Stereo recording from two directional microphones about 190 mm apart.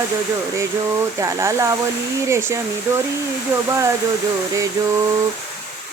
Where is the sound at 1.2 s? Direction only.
15° right (ahead or behind).